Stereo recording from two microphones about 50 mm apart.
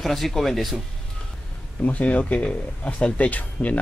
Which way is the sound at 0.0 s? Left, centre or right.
Centre.